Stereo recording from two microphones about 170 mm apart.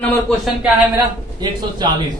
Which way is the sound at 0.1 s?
Centre (ahead or behind).